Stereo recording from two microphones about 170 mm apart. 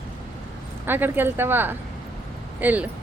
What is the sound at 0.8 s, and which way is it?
Speech, 10° right (ahead or behind).